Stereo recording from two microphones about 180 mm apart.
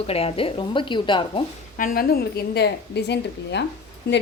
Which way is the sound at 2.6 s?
70° left (ahead or behind).